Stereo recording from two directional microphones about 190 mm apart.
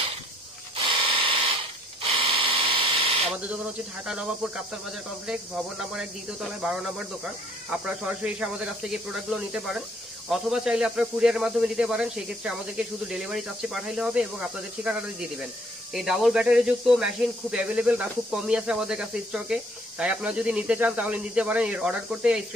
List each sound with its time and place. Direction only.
0.8 s a sound: 25° right (ahead or behind)
2.1 s electric toothbrush: 30° right (ahead or behind)
4.0 s speech: 5° right (ahead or behind)
6.6 s speech: 5° right (ahead or behind)